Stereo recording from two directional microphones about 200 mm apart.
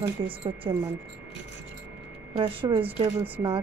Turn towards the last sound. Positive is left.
turn(degrees=-25)  # may be behind; listen again after turning